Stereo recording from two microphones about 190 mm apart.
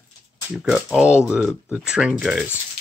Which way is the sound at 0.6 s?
5° right (ahead or behind).